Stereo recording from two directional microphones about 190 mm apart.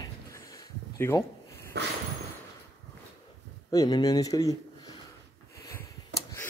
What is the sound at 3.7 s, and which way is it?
Speech, 20° left (ahead or behind).